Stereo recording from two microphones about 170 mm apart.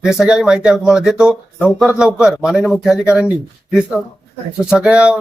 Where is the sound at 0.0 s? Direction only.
5° right (ahead or behind).